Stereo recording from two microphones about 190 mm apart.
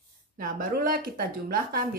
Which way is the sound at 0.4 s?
45° right (ahead or behind).